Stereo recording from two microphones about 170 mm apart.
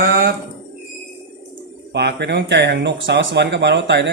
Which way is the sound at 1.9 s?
80° right.